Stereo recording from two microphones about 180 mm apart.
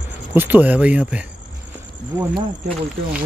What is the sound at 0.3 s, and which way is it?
Speech, 10° right (ahead or behind).